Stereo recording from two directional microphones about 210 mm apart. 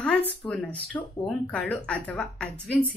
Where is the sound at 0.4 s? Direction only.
5° left (ahead or behind).